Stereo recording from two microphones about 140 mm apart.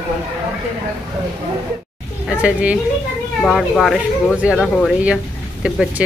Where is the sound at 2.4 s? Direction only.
10° right (ahead or behind).